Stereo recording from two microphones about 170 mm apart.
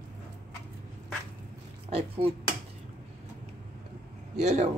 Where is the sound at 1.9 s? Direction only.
35° right (ahead or behind).